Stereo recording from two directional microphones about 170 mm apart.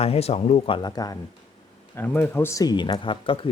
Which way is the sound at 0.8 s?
25° left (ahead or behind).